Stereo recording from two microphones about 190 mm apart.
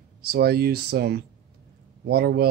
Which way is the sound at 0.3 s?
55° right (ahead or behind).